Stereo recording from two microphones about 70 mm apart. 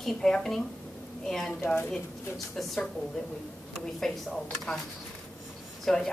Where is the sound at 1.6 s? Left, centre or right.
Left.